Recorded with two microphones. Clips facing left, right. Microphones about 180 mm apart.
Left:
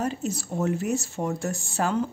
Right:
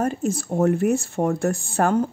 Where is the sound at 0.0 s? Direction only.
50° right (ahead or behind).